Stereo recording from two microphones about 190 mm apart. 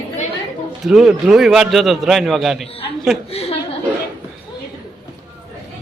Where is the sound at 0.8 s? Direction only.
Centre (ahead or behind).